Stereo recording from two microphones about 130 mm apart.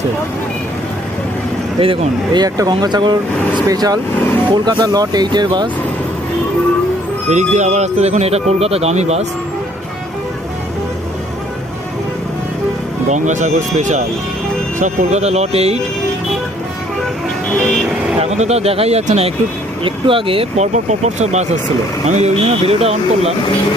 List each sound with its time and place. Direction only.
1.8 s speech: 45° right (ahead or behind)
7.3 s speech: 65° right (ahead or behind)
13.1 s speech: 70° right (ahead or behind); by 15.8 s 55° right (ahead or behind)
18.2 s speech: 55° right (ahead or behind)
19.8 s speech: 40° right (ahead or behind)
20.7 s speech: 60° right (ahead or behind)